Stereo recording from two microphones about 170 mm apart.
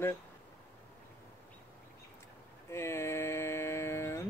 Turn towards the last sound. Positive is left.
turn(degrees=15)  # may be behind; listen again after turning